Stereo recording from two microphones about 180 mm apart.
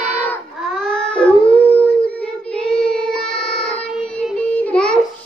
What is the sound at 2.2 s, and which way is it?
Child singing, 5° left (ahead or behind).